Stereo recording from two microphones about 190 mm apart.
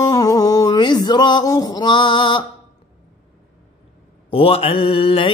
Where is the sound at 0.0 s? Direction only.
20° left (ahead or behind).